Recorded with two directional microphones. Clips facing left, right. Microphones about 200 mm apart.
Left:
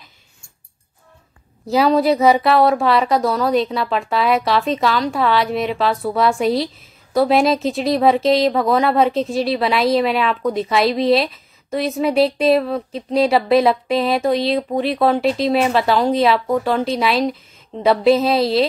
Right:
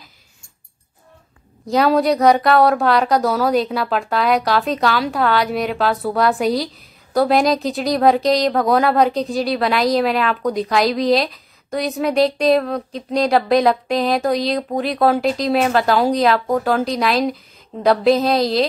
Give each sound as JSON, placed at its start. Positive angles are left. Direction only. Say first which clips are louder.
{"t": 1.7, "sound": "speech", "louder": "left 1 dB", "side_deg": 0}